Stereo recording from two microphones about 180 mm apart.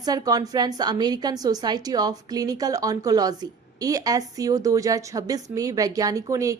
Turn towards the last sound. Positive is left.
turn(degrees=-20)  # may be behind; listen again after turning